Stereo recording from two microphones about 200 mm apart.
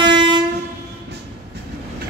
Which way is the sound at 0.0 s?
25° right (ahead or behind).